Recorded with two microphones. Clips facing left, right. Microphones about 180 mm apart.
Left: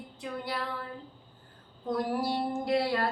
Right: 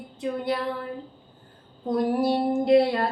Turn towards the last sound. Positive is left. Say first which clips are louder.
# right 9 dB
turn(degrees=-20)  # may be behind; listen again after turning